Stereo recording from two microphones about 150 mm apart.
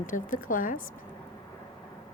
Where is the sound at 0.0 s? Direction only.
65° left (ahead or behind).